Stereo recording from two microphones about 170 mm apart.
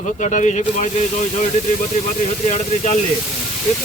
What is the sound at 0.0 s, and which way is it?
Speech, 50° left (ahead or behind).